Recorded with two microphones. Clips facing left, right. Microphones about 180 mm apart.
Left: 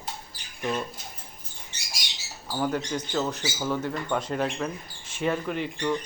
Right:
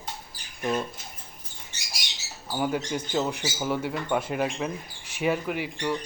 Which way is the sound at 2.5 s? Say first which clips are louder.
Even; 10° right (ahead or behind).